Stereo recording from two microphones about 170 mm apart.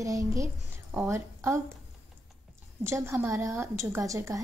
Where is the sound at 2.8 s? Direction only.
15° right (ahead or behind).